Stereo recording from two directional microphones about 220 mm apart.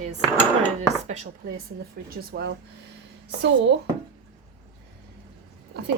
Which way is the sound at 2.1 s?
45° right (ahead or behind).